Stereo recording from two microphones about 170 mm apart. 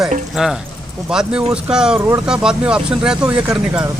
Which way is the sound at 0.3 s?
Centre (ahead or behind).